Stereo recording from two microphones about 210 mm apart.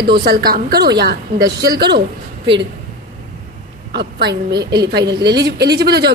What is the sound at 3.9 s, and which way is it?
Speech, 50° right (ahead or behind).